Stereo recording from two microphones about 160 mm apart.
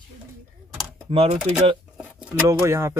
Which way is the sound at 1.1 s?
35° right (ahead or behind).